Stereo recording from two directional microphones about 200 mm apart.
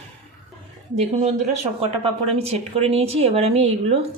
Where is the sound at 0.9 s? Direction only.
35° right (ahead or behind).